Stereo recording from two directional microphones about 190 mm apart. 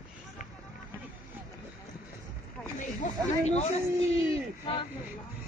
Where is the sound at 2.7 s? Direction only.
40° left (ahead or behind).